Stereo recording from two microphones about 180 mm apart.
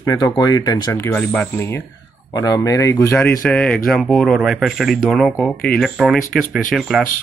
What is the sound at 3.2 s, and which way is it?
Speech, 5° left (ahead or behind).